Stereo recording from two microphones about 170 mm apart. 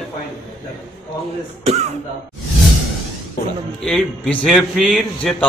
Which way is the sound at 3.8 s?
5° left (ahead or behind).